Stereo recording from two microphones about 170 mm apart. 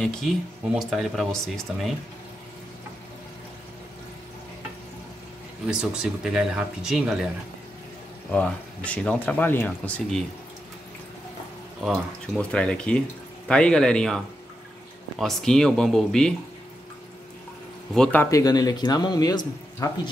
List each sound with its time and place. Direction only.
0.0 s speech: 5° left (ahead or behind)
5.7 s speech: 5° right (ahead or behind)
8.3 s speech: 5° left (ahead or behind)
11.8 s speech: 5° left (ahead or behind)
17.9 s speech: 5° left (ahead or behind); by 19.9 s 20° left (ahead or behind)